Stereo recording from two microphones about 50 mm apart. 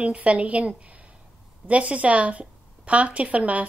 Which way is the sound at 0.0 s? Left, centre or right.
Right.